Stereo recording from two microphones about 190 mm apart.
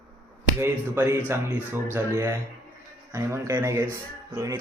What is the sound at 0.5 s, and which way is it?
Speech, 10° right (ahead or behind).